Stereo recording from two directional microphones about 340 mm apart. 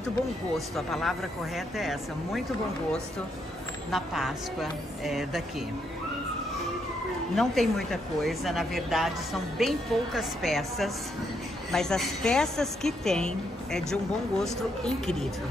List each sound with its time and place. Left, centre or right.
0.7 s speech: centre
3.9 s speech: centre
7.3 s speech: centre